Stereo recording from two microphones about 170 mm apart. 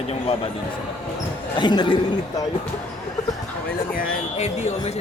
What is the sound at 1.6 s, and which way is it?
Speech, 25° left (ahead or behind).